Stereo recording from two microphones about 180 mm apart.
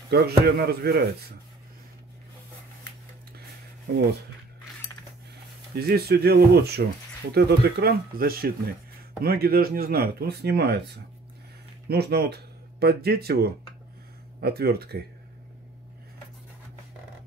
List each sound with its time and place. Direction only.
0.1 s speech: 60° right (ahead or behind)
5.8 s speech: 60° right (ahead or behind)
11.9 s speech: 60° right (ahead or behind)